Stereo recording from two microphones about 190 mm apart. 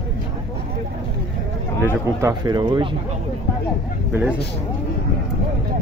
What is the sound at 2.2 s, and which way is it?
Speech, 20° right (ahead or behind).